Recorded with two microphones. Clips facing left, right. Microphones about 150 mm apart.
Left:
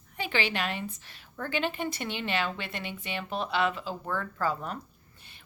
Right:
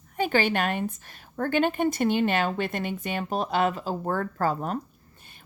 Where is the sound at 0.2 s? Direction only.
45° right (ahead or behind).